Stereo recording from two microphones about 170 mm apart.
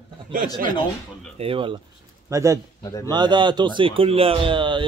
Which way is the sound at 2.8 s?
20° left (ahead or behind).